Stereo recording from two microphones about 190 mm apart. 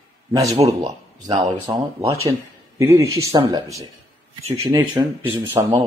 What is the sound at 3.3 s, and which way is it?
Speech, 25° right (ahead or behind).